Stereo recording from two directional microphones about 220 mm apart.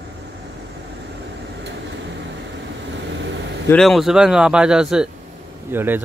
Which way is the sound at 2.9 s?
55° right (ahead or behind).